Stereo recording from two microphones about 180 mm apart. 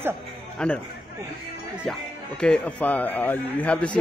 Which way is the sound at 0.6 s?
5° left (ahead or behind).